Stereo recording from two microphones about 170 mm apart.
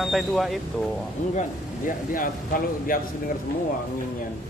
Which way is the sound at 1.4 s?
50° left (ahead or behind).